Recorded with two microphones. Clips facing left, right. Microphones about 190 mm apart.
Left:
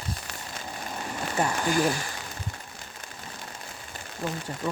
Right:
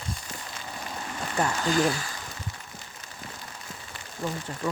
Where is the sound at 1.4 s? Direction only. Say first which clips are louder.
Even; 15° left (ahead or behind).